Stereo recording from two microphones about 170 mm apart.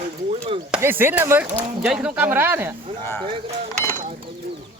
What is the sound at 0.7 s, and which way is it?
Speech, 10° right (ahead or behind).